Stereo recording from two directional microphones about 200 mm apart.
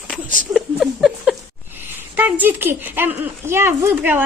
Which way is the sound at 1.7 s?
10° right (ahead or behind).